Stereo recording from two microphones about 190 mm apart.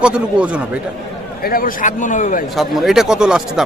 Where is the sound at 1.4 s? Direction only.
50° left (ahead or behind).